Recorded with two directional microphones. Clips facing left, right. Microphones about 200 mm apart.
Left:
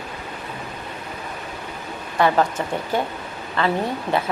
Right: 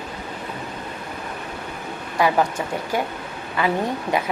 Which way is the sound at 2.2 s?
10° right (ahead or behind).